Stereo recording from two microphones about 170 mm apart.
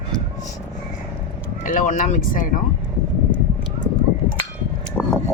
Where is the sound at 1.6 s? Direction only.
50° left (ahead or behind).